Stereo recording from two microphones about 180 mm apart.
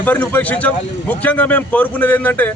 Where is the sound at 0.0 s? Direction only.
10° left (ahead or behind).